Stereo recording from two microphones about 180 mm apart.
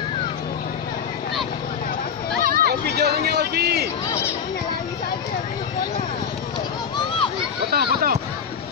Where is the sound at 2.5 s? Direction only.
60° right (ahead or behind).